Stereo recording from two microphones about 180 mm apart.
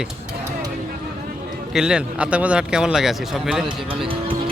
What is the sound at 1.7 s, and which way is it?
Speech, 5° right (ahead or behind).